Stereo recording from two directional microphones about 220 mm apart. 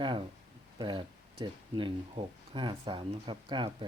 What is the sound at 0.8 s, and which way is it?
Speech, 20° right (ahead or behind).